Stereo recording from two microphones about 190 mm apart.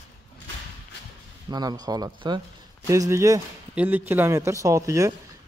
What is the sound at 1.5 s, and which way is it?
Speech, 20° right (ahead or behind).